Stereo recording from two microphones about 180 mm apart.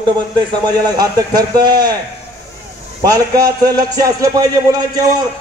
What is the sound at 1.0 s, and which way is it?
Speech, 20° right (ahead or behind).